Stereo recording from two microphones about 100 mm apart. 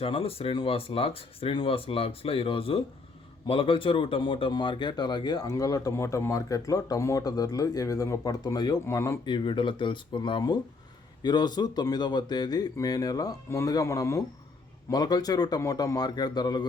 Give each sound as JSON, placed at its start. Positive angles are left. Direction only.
{"t": 0.0, "sound": "speech", "side_deg": 70}
{"t": 8.9, "sound": "speech", "side_deg": 30}
{"t": 9.2, "sound": "speech", "side_deg": 55}